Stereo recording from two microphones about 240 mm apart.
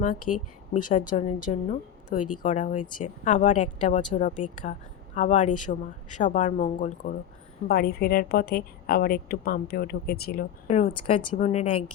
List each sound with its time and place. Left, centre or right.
0.3 s a woman's voice: left